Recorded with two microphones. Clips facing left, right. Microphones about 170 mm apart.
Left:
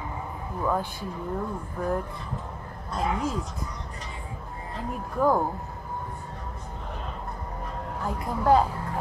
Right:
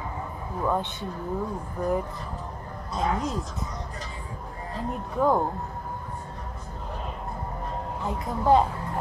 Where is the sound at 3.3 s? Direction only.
Centre (ahead or behind).